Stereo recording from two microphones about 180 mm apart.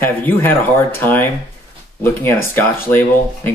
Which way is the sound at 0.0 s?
10° left (ahead or behind).